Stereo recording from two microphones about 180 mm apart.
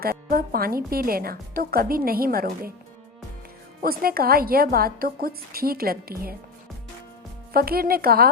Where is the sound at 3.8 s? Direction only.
55° right (ahead or behind).